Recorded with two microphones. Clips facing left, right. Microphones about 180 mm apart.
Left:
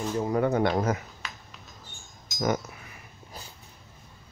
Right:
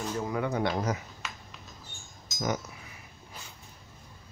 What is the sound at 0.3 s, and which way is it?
Speech, 45° left (ahead or behind).